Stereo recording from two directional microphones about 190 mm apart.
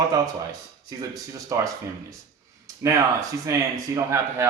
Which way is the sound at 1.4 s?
15° right (ahead or behind).